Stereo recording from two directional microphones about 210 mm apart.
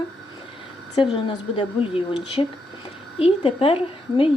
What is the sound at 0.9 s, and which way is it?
A woman's voice, 20° left (ahead or behind).